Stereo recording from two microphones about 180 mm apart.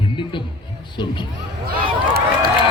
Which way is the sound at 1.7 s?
60° right (ahead or behind).